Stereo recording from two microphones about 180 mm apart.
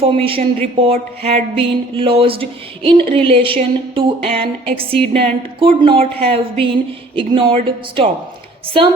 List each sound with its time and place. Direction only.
0.0 s music: 30° right (ahead or behind)
7.2 s speech: 30° right (ahead or behind)